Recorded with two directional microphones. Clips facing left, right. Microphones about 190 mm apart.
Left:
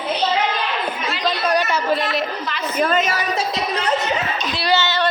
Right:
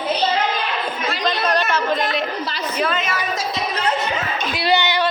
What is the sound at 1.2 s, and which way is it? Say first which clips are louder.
Speech: left 1 dB; 10° left (ahead or behind).